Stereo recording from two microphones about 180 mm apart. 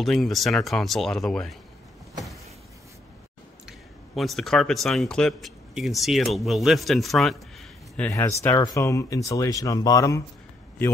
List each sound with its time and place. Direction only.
0.0 s speech: centre (ahead or behind)
3.6 s a man's voice: centre (ahead or behind)
8.1 s speech: 15° left (ahead or behind)